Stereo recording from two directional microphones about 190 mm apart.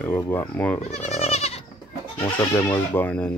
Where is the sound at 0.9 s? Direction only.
35° left (ahead or behind).